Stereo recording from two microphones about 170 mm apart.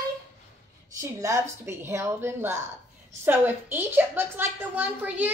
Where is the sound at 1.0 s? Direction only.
15° right (ahead or behind).